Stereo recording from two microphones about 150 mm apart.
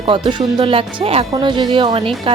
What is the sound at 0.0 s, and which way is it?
Speech, 35° right (ahead or behind).